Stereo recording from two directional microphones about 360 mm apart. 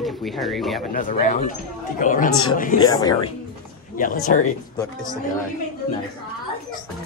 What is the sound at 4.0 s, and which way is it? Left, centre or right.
Speech, left.